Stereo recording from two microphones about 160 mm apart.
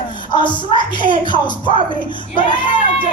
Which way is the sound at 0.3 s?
30° left (ahead or behind).